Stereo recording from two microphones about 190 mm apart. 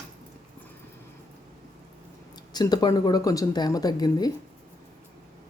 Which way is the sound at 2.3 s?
20° left (ahead or behind).